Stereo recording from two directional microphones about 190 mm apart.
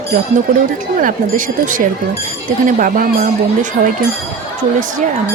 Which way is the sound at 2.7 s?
45° right (ahead or behind).